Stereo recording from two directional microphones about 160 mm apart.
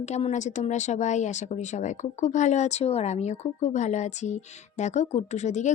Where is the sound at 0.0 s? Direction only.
45° left (ahead or behind).